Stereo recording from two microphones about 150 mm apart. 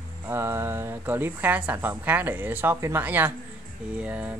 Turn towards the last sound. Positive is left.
turn(degrees=-10)  # may be behind; listen again after turning